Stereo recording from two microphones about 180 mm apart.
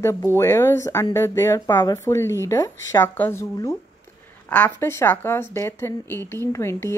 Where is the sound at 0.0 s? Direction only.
15° left (ahead or behind).